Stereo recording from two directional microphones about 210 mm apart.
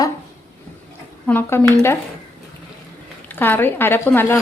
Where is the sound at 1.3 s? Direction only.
10° left (ahead or behind).